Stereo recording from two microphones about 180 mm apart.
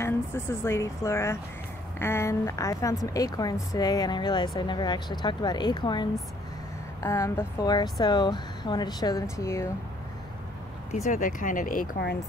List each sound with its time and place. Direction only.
0.0 s a woman's voice: 15° left (ahead or behind)
10.9 s speech: 45° left (ahead or behind)